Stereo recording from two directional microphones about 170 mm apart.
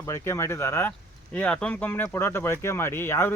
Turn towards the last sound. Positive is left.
turn(degrees=15)  # may be behind; listen again after turning